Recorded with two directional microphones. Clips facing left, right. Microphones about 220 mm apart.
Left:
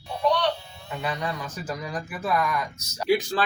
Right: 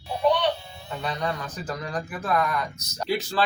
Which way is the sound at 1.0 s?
10° left (ahead or behind).